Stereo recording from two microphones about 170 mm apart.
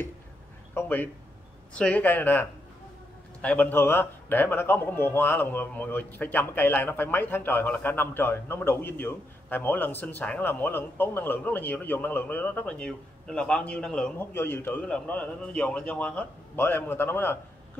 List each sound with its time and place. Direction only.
0.7 s a sound: 10° left (ahead or behind)
1.7 s speech: 10° left (ahead or behind)
3.4 s speech: 10° left (ahead or behind)